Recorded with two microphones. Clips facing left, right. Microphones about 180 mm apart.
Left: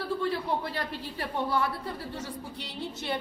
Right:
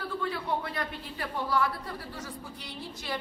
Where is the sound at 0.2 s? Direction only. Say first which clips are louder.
Left 2 dB; 35° left (ahead or behind).